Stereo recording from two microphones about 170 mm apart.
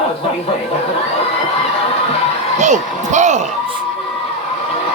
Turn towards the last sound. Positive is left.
turn(degrees=-45)  # may be behind; listen again after turning